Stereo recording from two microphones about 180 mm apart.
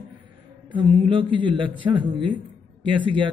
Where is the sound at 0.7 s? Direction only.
25° right (ahead or behind).